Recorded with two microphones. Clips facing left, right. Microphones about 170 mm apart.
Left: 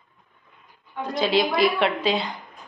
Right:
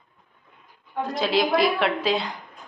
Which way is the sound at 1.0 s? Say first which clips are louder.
Left 1 dB; centre (ahead or behind).